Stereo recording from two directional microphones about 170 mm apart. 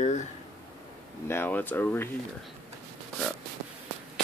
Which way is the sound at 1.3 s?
10° left (ahead or behind).